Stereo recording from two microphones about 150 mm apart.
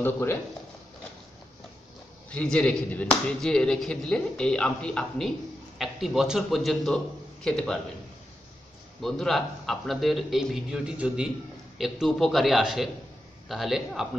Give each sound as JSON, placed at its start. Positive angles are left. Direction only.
{"t": 0.0, "sound": "speech", "side_deg": 15}
{"t": 2.3, "sound": "speech", "side_deg": 5}
{"t": 9.0, "sound": "speech", "side_deg": 0}